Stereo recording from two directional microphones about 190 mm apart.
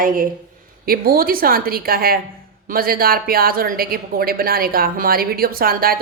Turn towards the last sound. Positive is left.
turn(degrees=-50)  # may be behind; listen again after turning